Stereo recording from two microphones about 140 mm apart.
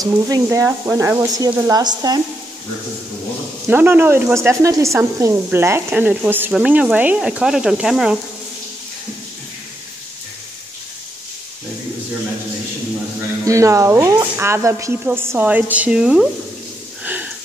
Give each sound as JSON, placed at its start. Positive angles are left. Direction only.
{"t": 0.0, "sound": "speech", "side_deg": -25}
{"t": 3.6, "sound": "speech", "side_deg": -15}
{"t": 13.5, "sound": "speech", "side_deg": -20}
{"t": 17.0, "sound": "a sound", "side_deg": -10}